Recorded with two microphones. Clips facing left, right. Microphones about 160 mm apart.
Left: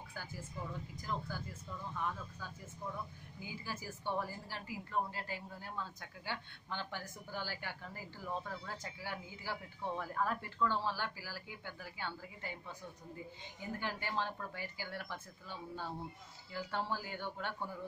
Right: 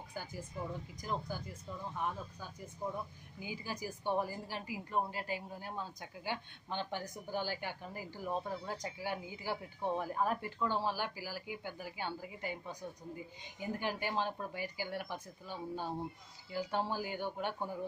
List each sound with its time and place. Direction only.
1.0 s speech: 15° right (ahead or behind)
2.8 s speech: 35° right (ahead or behind)
3.4 s speech: 15° right (ahead or behind)